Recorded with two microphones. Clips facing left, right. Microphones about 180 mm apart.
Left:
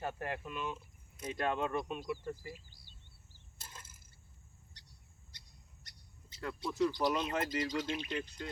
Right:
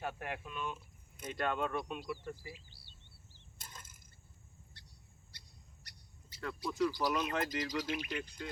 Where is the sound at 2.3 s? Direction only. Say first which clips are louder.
Left 2 dB; 45° left (ahead or behind).